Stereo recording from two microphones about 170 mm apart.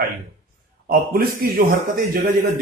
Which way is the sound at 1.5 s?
55° right (ahead or behind).